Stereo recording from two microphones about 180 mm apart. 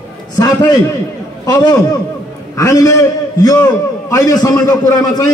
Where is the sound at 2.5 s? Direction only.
15° left (ahead or behind).